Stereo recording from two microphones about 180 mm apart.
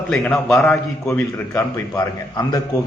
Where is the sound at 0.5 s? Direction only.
15° left (ahead or behind).